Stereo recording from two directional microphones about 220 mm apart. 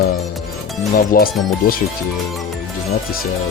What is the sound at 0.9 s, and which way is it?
Speech, 40° left (ahead or behind).